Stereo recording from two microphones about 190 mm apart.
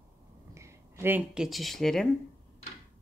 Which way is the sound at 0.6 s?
15° right (ahead or behind).